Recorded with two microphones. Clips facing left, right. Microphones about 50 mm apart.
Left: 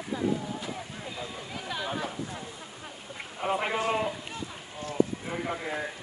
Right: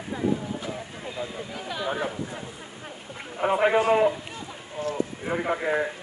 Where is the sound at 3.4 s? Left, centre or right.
Right.